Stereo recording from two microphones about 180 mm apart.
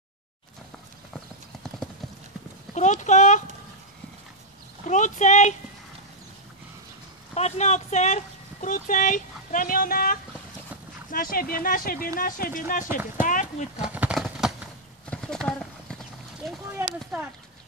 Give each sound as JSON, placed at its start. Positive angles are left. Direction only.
{"t": 2.7, "sound": "speech", "side_deg": 40}
{"t": 4.8, "sound": "speech", "side_deg": 40}
{"t": 7.3, "sound": "speech", "side_deg": 40}
{"t": 13.7, "sound": "a sound", "side_deg": -5}
{"t": 15.0, "sound": "clip-clop", "side_deg": 5}
{"t": 16.7, "sound": "speech", "side_deg": -10}